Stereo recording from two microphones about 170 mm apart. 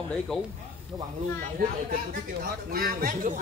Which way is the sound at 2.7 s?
60° right (ahead or behind).